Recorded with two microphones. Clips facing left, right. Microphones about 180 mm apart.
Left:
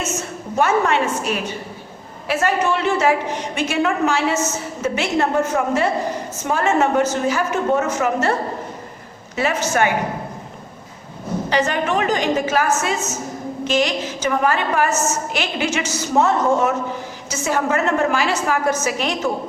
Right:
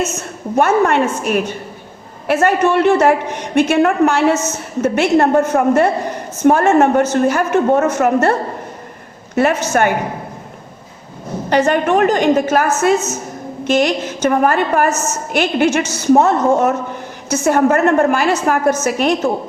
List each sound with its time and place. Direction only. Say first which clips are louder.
0.5 s a woman's voice: right 5 dB; 55° right (ahead or behind)
11.4 s a woman's voice: right 7 dB; 55° right (ahead or behind)